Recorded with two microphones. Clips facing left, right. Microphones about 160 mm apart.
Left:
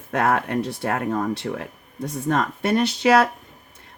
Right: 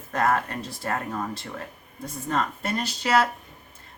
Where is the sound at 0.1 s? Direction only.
70° left (ahead or behind).